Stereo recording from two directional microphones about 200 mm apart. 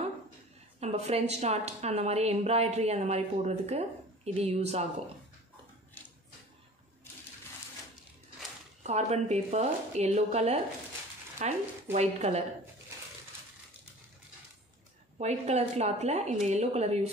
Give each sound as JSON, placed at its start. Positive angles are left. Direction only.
{"t": 0.7, "sound": "a woman's voice", "side_deg": -30}
{"t": 8.8, "sound": "a woman's voice", "side_deg": -35}
{"t": 15.1, "sound": "a woman's voice", "side_deg": -35}